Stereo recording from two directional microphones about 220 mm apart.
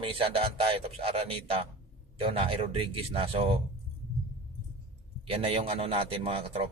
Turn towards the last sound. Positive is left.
turn(degrees=-25)  # may be behind; listen again after turning